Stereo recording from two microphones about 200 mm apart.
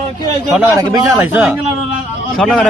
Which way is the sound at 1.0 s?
5° right (ahead or behind).